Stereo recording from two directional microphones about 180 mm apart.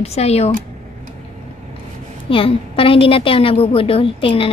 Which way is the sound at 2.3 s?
30° left (ahead or behind).